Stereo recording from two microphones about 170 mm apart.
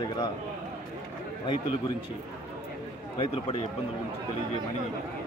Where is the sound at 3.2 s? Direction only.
35° left (ahead or behind).